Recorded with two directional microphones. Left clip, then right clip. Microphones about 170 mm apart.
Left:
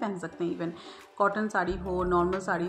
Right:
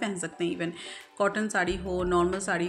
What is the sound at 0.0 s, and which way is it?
Speech, 15° right (ahead or behind).